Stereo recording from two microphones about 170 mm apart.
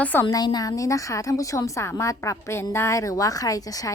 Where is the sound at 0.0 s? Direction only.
10° left (ahead or behind).